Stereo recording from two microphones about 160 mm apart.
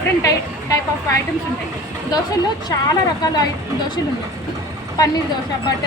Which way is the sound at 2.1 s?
25° left (ahead or behind).